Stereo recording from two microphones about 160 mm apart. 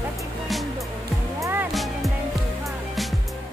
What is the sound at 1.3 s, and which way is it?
Music, 15° right (ahead or behind).